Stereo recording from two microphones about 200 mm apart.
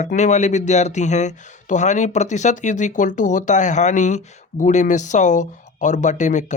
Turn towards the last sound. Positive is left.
turn(degrees=35)  # may be behind; listen again after turning